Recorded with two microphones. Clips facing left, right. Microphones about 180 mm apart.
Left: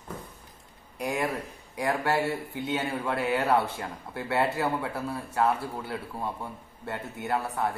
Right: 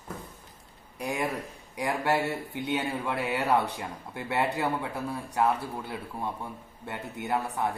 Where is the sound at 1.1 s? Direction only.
20° right (ahead or behind).